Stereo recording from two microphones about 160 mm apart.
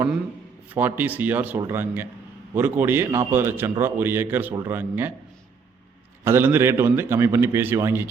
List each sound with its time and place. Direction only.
0.7 s a man's voice: 10° right (ahead or behind)
6.2 s a man's voice: 15° right (ahead or behind)